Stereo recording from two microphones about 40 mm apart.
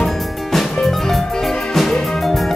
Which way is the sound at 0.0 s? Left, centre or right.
Centre.